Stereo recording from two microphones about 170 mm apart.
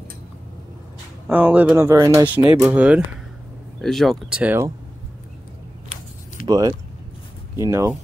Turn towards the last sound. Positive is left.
turn(degrees=-15)  # may be behind; listen again after turning